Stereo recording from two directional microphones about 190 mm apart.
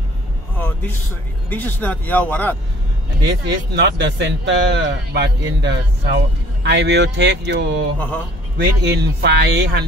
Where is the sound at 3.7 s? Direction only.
65° right (ahead or behind).